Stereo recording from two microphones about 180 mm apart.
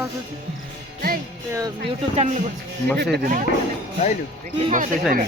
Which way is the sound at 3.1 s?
50° right (ahead or behind).